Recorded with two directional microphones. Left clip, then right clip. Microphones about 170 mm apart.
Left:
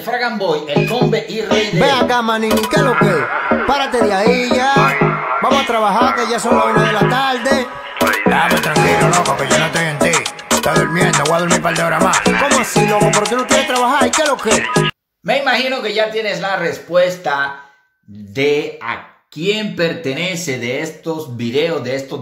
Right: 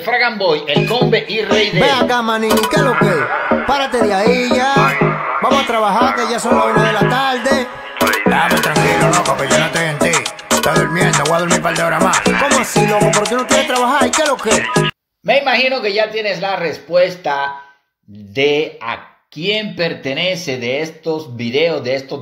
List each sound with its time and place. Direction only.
0.0 s a man's voice: 10° right (ahead or behind)
1.5 s music: centre (ahead or behind)
15.2 s a man's voice: 20° right (ahead or behind)